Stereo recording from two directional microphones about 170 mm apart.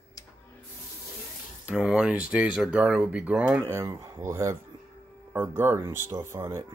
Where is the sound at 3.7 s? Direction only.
15° right (ahead or behind).